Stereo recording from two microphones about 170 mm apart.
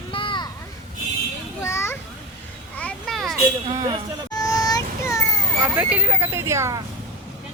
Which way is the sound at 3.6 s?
30° right (ahead or behind).